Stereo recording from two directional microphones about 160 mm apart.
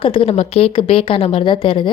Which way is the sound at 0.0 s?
35° left (ahead or behind).